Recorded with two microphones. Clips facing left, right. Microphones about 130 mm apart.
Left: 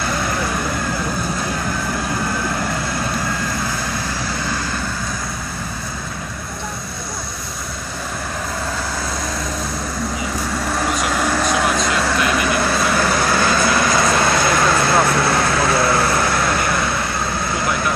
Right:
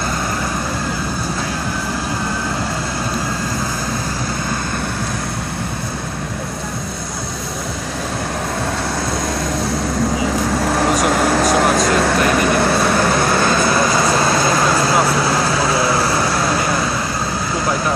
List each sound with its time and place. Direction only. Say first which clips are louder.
10.7 s vehicle: right 4 dB; 35° right (ahead or behind)
12.5 s vehicle: right 3 dB; 30° right (ahead or behind)
13.8 s vehicle: right 1 dB; 15° right (ahead or behind)